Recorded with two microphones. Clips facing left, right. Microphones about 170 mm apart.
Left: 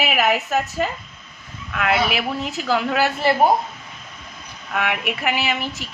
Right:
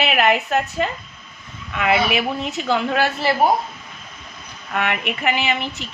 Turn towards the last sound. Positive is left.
turn(degrees=5)  # may be behind; listen again after turning